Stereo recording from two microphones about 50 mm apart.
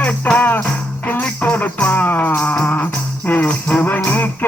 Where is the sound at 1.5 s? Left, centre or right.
Left.